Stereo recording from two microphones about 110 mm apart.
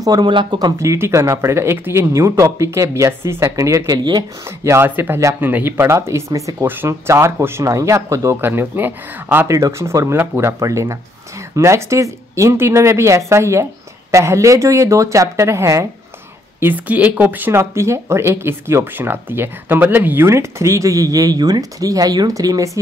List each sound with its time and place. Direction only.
0.0 s speech: 40° right (ahead or behind)
4.5 s speech: 25° right (ahead or behind)
16.5 s speech: 15° right (ahead or behind); by 22.7 s 30° right (ahead or behind)